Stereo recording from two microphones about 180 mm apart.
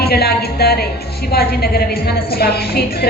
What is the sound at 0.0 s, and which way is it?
Speech, 60° left (ahead or behind).